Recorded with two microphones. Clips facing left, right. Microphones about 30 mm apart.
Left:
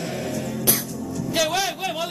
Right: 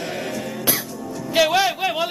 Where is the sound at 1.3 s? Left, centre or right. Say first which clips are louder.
Right 6 dB; centre.